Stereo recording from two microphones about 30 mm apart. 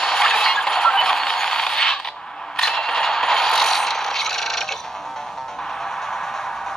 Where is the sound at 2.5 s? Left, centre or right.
Centre.